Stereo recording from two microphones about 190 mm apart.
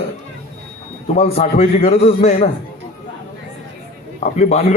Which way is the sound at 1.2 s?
30° left (ahead or behind).